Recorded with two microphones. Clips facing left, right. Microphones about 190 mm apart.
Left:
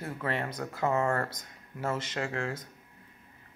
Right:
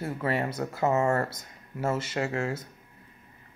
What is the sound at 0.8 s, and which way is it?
Speech, 25° right (ahead or behind).